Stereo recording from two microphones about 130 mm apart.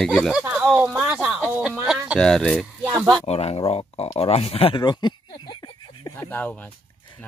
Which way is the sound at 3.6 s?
40° left (ahead or behind).